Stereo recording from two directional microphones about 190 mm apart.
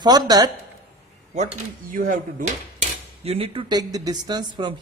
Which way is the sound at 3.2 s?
30° right (ahead or behind).